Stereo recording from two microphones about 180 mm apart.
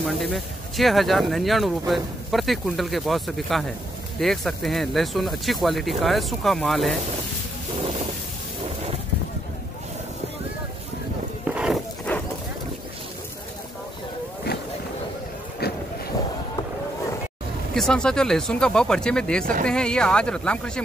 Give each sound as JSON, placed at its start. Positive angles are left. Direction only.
{"t": 0.0, "sound": "speech", "side_deg": 0}
{"t": 11.4, "sound": "livestock", "side_deg": -5}
{"t": 12.1, "sound": "dog", "side_deg": 10}
{"t": 15.6, "sound": "a sound", "side_deg": 60}
{"t": 17.7, "sound": "speech", "side_deg": 5}